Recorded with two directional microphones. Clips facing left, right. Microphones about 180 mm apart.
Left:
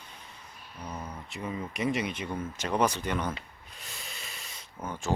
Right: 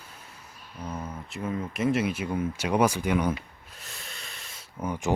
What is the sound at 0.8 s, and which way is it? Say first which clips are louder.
Speech: right 4 dB; 5° right (ahead or behind).